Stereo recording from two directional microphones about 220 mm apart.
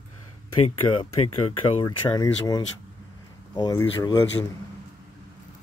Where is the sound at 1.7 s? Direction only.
20° left (ahead or behind).